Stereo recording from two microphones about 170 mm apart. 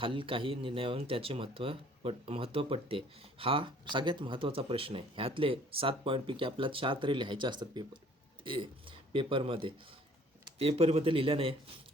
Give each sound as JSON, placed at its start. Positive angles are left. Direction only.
{"t": 0.0, "sound": "speech", "side_deg": -30}